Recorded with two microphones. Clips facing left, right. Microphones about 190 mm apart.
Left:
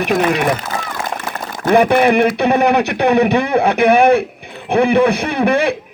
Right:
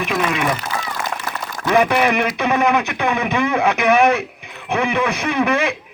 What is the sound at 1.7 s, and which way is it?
Speech, 45° left (ahead or behind).